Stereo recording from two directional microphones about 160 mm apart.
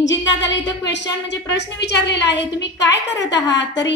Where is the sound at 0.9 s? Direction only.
90° left.